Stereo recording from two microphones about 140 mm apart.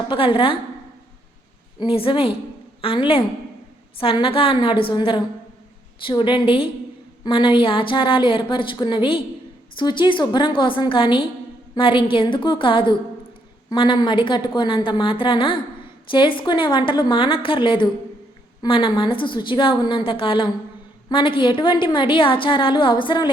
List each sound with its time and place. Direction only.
0.1 s a woman's voice: 40° left (ahead or behind)
1.8 s a woman's voice: 40° left (ahead or behind)